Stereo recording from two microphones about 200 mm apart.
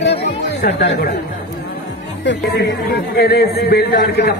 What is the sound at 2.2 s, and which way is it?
A man's voice, 60° left (ahead or behind).